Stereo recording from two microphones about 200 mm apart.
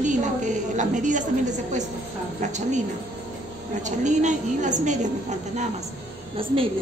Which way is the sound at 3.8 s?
35° right (ahead or behind).